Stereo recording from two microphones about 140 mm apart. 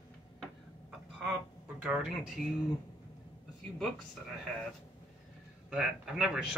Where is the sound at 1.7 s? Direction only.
10° right (ahead or behind).